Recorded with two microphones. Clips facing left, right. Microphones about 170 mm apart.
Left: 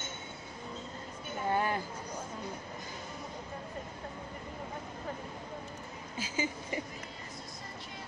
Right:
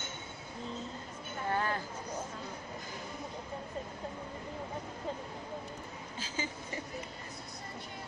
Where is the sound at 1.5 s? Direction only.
15° left (ahead or behind).